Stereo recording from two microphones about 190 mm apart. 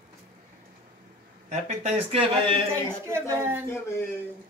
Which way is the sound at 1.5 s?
30° right (ahead or behind).